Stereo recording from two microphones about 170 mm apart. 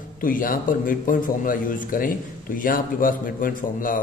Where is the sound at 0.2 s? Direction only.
55° left (ahead or behind).